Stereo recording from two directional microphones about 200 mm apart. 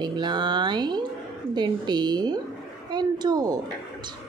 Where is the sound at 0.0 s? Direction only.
20° right (ahead or behind).